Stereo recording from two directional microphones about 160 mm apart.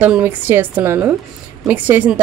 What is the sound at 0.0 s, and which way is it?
A woman's voice, 10° right (ahead or behind).